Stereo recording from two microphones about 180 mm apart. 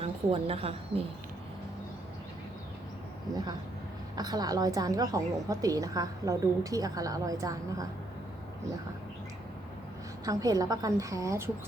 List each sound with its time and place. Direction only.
0.0 s a woman's voice: 35° right (ahead or behind)
4.1 s a woman's voice: 20° right (ahead or behind)
10.2 s a woman's voice: 20° right (ahead or behind)